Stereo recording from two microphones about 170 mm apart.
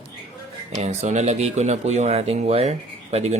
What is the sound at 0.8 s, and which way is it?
Speech, 40° right (ahead or behind).